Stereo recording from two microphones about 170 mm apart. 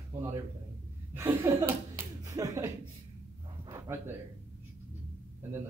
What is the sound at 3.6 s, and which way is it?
Dog, 20° right (ahead or behind).